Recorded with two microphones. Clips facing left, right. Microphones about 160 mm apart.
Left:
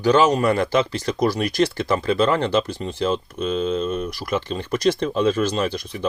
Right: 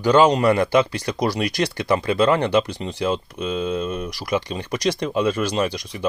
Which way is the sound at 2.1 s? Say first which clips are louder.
Right 2 dB; 15° right (ahead or behind).